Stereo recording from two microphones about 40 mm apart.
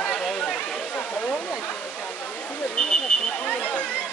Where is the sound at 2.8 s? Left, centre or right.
Left.